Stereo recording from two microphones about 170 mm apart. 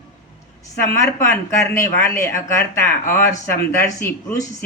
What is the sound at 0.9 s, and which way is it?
Speech, 15° left (ahead or behind).